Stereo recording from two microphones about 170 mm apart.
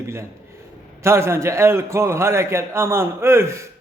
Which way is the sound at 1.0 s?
15° right (ahead or behind).